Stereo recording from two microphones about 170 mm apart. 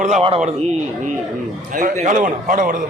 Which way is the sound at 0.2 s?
35° right (ahead or behind).